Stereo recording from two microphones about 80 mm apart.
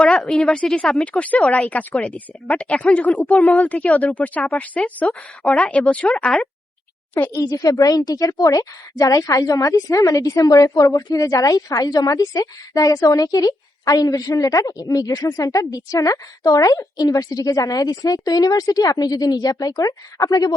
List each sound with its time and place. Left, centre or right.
0.0 s speech: centre
1.0 s speech: centre
7.3 s a woman's voice: left